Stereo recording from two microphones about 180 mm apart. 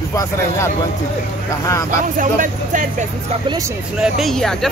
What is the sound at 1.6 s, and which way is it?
Speech, 15° left (ahead or behind).